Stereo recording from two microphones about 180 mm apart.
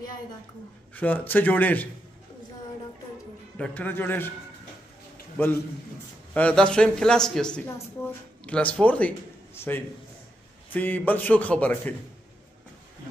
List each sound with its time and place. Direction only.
0.9 s a man's voice: 10° left (ahead or behind)
3.5 s a man's voice: 5° left (ahead or behind)
5.4 s a man's voice: 10° left (ahead or behind)